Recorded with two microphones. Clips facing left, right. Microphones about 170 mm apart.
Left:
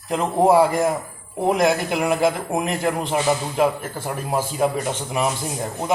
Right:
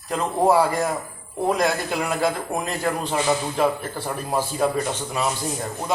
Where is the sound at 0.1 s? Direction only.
20° left (ahead or behind).